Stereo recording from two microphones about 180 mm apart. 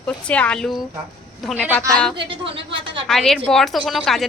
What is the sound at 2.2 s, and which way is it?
Speech, 30° right (ahead or behind).